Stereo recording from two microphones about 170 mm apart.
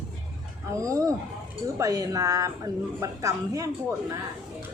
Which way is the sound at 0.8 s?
20° right (ahead or behind).